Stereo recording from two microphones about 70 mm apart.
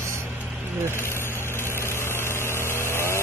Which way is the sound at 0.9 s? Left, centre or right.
Left.